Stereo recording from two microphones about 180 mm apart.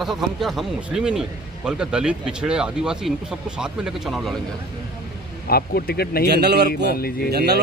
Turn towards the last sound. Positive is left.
turn(degrees=-65)  # may be behind; listen again after turning